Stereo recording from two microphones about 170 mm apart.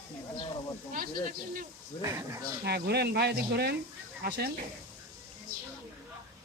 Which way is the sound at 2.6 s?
75° right (ahead or behind).